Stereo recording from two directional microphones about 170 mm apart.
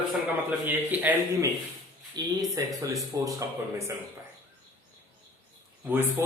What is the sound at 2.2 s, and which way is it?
Speech, 25° right (ahead or behind).